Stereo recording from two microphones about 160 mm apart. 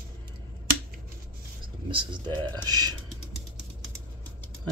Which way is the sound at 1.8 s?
30° right (ahead or behind).